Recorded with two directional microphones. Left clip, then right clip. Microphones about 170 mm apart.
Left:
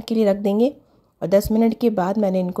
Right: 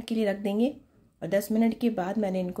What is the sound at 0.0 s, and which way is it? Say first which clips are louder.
Speech: left 9 dB; 45° left (ahead or behind).